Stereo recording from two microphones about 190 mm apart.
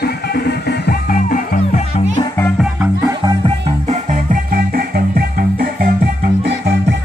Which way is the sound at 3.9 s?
45° right (ahead or behind).